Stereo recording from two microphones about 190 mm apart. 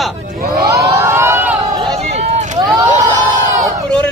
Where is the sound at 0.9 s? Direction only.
15° right (ahead or behind).